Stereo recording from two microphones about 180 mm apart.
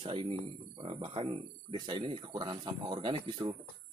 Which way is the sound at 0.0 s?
30° right (ahead or behind).